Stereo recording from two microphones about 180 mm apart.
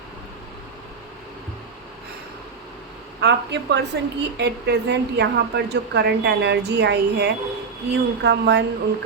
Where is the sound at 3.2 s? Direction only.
75° right (ahead or behind).